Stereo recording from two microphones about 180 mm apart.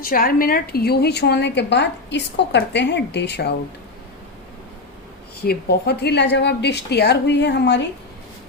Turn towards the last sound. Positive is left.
turn(degrees=70)  # may be behind; listen again after turning